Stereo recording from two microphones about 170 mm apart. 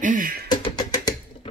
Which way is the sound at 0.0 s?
50° right (ahead or behind).